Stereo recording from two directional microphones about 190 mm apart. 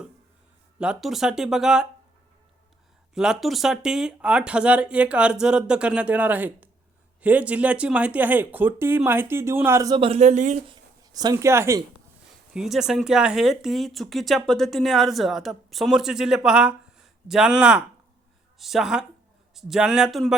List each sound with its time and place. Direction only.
0.8 s speech: 5° right (ahead or behind)
3.2 s speech: centre (ahead or behind); by 10.6 s 40° right (ahead or behind)
10.7 s speech: 20° right (ahead or behind)
12.5 s speech: centre (ahead or behind)